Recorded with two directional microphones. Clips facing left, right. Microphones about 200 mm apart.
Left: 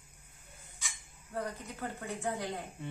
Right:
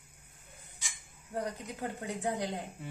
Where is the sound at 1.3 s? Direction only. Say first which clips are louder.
Right 2 dB; 15° right (ahead or behind).